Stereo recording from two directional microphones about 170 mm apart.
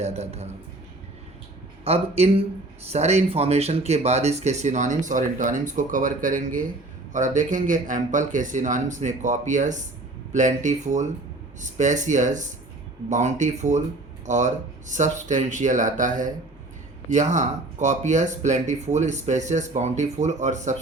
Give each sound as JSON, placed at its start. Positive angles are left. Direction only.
{"t": 0.0, "sound": "speech", "side_deg": -40}
{"t": 1.8, "sound": "speech", "side_deg": -35}